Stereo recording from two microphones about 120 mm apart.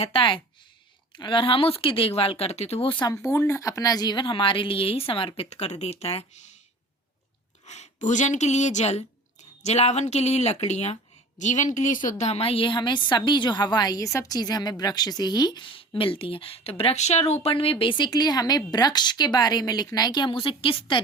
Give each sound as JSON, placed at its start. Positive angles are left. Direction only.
{"t": 0.0, "sound": "speech", "side_deg": 45}
{"t": 3.1, "sound": "a woman's voice", "side_deg": 25}
{"t": 5.5, "sound": "speech", "side_deg": 65}
{"t": 7.6, "sound": "a sound", "side_deg": 70}
{"t": 8.0, "sound": "a woman's voice", "side_deg": 90}
{"t": 11.3, "sound": "a woman's voice", "side_deg": 90}